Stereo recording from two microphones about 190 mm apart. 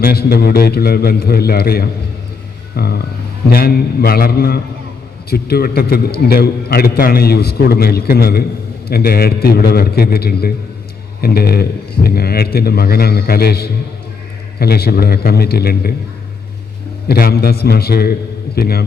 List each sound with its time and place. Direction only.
0.0 s a man's voice: 55° left (ahead or behind)
17.1 s a man's voice: 55° left (ahead or behind)